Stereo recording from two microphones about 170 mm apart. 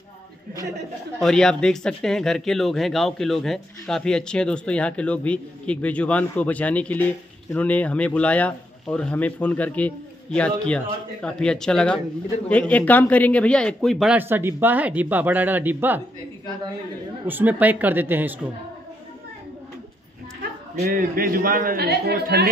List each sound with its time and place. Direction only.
1.2 s speech: 5° left (ahead or behind)
14.1 s speech: 10° right (ahead or behind)
17.3 s speech: 10° right (ahead or behind)
20.8 s a man's voice: 60° right (ahead or behind)